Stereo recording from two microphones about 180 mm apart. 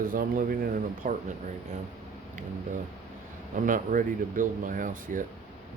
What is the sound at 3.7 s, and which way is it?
Speech, 45° right (ahead or behind).